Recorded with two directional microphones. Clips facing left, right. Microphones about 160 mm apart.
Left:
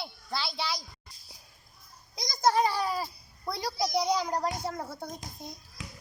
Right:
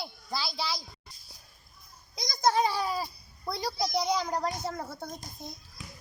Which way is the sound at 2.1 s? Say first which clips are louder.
Left 1 dB; centre (ahead or behind).